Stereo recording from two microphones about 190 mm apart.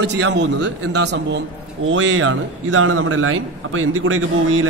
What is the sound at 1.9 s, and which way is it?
A man's voice, 85° right.